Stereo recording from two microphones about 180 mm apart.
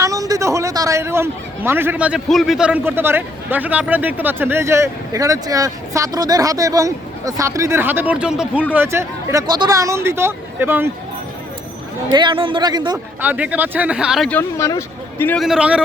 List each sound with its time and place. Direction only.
0.0 s a man's voice: 20° right (ahead or behind)
12.1 s speech: 25° right (ahead or behind)
13.2 s a man's voice: 10° right (ahead or behind)
14.3 s speech: 10° left (ahead or behind)
15.4 s a man's voice: 5° right (ahead or behind)